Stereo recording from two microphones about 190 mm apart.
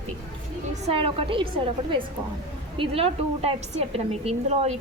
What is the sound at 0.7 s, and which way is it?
Speech, 30° right (ahead or behind).